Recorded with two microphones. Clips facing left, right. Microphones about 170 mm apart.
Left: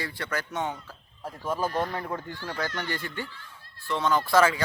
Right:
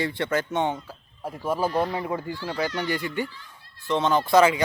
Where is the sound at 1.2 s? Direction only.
10° right (ahead or behind).